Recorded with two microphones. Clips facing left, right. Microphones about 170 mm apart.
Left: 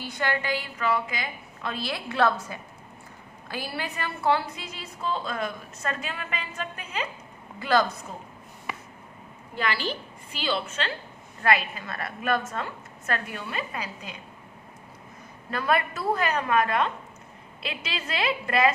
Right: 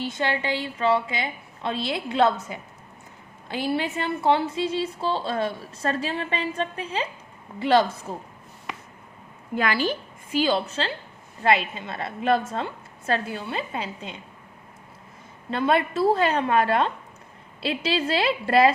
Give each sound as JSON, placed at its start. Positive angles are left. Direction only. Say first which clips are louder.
{"t": 0.0, "sound": "a woman's voice", "louder": "right 3 dB", "side_deg": -25}
{"t": 9.6, "sound": "a woman's voice", "louder": "right 5 dB", "side_deg": -45}
{"t": 15.4, "sound": "a woman's voice", "louder": "right 4 dB", "side_deg": -25}